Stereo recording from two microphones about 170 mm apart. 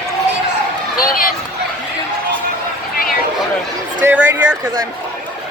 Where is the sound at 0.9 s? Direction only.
55° left (ahead or behind).